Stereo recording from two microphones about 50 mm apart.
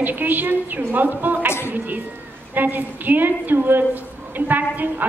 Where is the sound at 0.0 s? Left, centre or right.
Right.